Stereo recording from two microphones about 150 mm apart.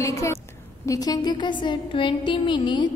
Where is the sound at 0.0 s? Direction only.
20° left (ahead or behind).